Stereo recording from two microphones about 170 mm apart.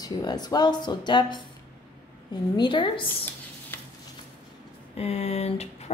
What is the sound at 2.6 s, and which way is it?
Speech, 30° left (ahead or behind).